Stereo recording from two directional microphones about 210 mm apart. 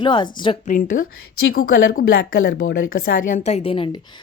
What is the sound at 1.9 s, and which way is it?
Speech, 45° left (ahead or behind).